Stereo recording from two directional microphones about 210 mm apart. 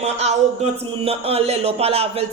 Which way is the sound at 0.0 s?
30° right (ahead or behind).